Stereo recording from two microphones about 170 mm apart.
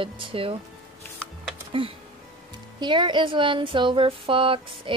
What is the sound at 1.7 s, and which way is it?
A woman's voice, 30° right (ahead or behind).